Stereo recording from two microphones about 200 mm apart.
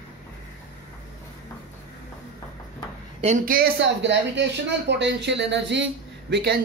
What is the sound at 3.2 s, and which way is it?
Speech, 40° right (ahead or behind).